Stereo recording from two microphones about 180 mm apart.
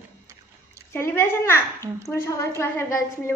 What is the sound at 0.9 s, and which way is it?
A woman's voice, 15° left (ahead or behind).